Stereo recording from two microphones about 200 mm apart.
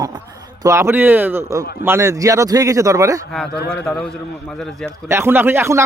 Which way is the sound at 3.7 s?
5° left (ahead or behind).